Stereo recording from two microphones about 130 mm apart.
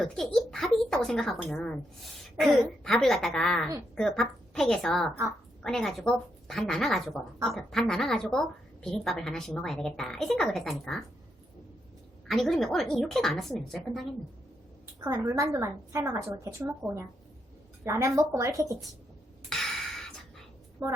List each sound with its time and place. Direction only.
0.0 s a woman's voice: 5° left (ahead or behind)
12.3 s a woman's voice: centre (ahead or behind)
15.0 s a woman's voice: 25° right (ahead or behind)
17.8 s a woman's voice: 20° right (ahead or behind)
19.5 s a sound: centre (ahead or behind)